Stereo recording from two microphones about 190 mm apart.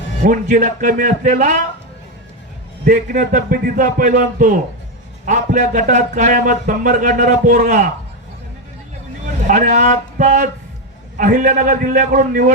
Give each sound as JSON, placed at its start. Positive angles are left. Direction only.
{"t": 0.3, "sound": "speech", "side_deg": -40}
{"t": 2.8, "sound": "speech", "side_deg": -45}
{"t": 9.5, "sound": "speech", "side_deg": -40}